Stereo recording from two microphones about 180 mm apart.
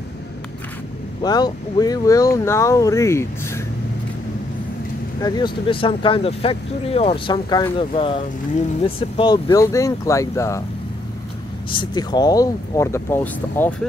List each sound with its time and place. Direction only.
1.2 s speech: 20° left (ahead or behind)
5.2 s speech: 25° left (ahead or behind)
11.7 s speech: 25° left (ahead or behind); by 13.7 s 10° left (ahead or behind)